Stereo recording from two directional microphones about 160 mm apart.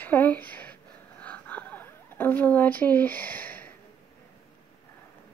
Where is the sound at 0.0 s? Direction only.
10° left (ahead or behind).